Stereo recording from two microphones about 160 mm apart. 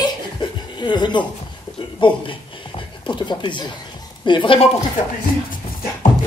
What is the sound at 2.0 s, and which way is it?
Speech, 30° left (ahead or behind).